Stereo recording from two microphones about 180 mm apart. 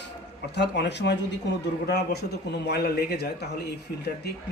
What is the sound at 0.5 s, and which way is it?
Speech, 75° left (ahead or behind).